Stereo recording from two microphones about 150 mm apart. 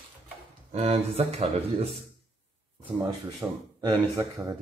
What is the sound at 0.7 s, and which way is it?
Speech, 40° right (ahead or behind).